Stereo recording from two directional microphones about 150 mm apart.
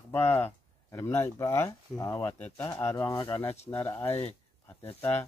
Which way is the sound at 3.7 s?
15° left (ahead or behind).